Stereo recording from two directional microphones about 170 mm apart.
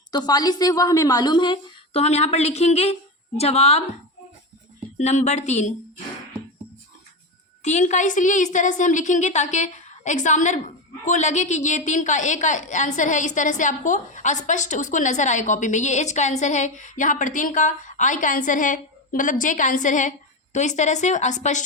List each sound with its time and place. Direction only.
0.1 s a woman's voice: 25° left (ahead or behind)
4.9 s a woman's voice: 45° left (ahead or behind)
7.6 s a woman's voice: 45° left (ahead or behind)